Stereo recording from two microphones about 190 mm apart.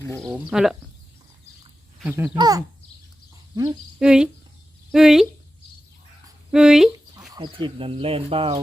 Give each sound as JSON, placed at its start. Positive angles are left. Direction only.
{"t": 0.2, "sound": "speech", "side_deg": 0}
{"t": 2.0, "sound": "speech", "side_deg": -10}
{"t": 2.3, "sound": "speech", "side_deg": -20}
{"t": 4.0, "sound": "speech", "side_deg": -5}
{"t": 6.5, "sound": "dog", "side_deg": -5}
{"t": 7.3, "sound": "speech", "side_deg": -25}